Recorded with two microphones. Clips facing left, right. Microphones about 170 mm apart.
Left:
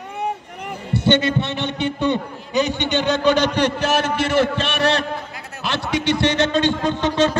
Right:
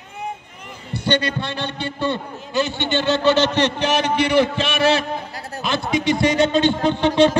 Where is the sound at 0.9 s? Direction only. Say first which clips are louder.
Left 4 dB; 25° left (ahead or behind); by 5.1 s 5° right (ahead or behind).